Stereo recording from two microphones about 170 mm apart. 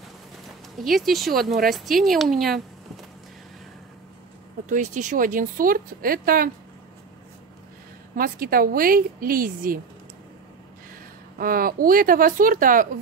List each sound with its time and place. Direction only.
0.8 s speech: centre (ahead or behind)
4.6 s speech: 50° right (ahead or behind)
8.2 s a woman's voice: 60° right (ahead or behind)
11.3 s a woman's voice: 55° right (ahead or behind)